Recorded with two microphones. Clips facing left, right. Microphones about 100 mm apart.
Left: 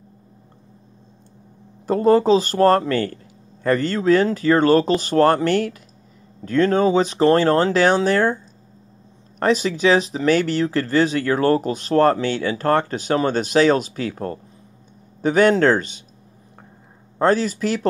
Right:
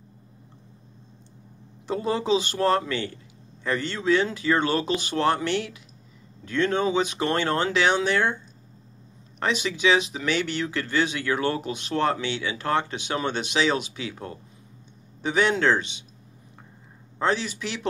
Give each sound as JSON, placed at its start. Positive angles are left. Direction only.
{"t": 1.9, "sound": "speech", "side_deg": 45}
{"t": 9.4, "sound": "speech", "side_deg": 40}
{"t": 17.2, "sound": "speech", "side_deg": 45}